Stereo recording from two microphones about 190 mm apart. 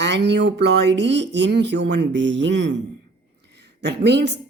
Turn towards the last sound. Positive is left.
turn(degrees=-65)  # may be behind; listen again after turning